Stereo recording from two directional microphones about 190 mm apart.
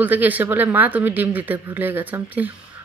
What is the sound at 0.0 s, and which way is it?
A woman's voice, 10° right (ahead or behind).